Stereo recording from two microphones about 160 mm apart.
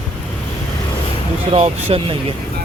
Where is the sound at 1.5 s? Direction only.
35° right (ahead or behind).